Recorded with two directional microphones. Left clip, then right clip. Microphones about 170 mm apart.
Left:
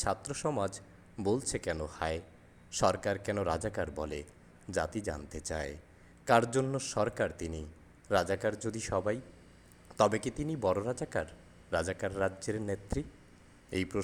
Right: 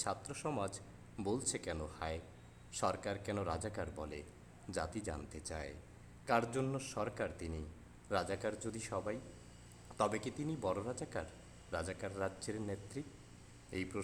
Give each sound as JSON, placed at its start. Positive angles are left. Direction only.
{"t": 0.0, "sound": "speech", "side_deg": 20}